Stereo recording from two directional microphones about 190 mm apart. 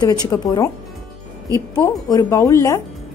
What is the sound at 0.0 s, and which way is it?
Speech, 20° left (ahead or behind).